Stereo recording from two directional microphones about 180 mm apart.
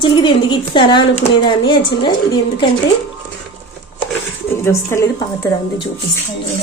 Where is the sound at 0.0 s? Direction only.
25° left (ahead or behind).